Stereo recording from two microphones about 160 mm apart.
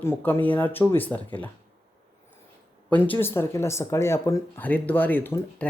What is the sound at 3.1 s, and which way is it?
Speech, 15° left (ahead or behind).